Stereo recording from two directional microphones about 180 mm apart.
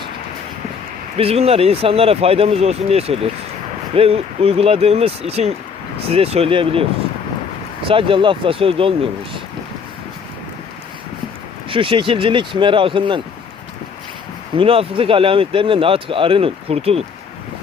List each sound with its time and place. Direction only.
1.1 s speech: 35° right (ahead or behind)
7.9 s speech: 30° right (ahead or behind)
11.7 s speech: 30° right (ahead or behind)
14.5 s speech: 30° right (ahead or behind)